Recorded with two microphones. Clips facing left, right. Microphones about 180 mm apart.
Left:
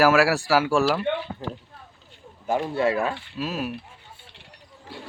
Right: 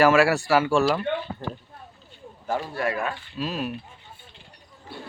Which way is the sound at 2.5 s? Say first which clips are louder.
Left 4 dB; 20° left (ahead or behind).